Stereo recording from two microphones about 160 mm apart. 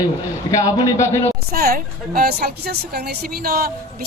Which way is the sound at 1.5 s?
70° right (ahead or behind).